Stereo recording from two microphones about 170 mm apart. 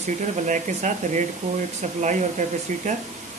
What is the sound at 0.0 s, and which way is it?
Speech, 45° right (ahead or behind).